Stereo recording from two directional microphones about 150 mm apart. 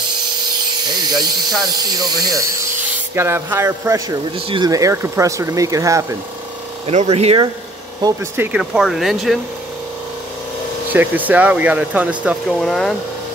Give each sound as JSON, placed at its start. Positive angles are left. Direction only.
{"t": 0.7, "sound": "electric toothbrush", "side_deg": -30}
{"t": 1.8, "sound": "speech", "side_deg": -25}
{"t": 6.9, "sound": "speech", "side_deg": -45}
{"t": 8.0, "sound": "speech", "side_deg": -15}
{"t": 8.7, "sound": "speech", "side_deg": 0}
{"t": 10.9, "sound": "speech", "side_deg": -10}